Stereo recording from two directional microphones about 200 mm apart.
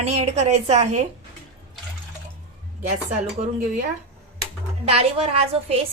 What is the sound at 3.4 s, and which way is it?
Speech, 30° right (ahead or behind).